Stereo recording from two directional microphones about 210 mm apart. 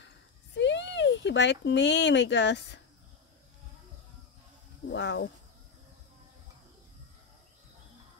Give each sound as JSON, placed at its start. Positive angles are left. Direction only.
{"t": 0.6, "sound": "speech", "side_deg": 55}
{"t": 4.9, "sound": "speech", "side_deg": 55}